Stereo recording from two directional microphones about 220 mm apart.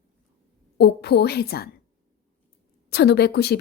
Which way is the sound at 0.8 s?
45° left (ahead or behind).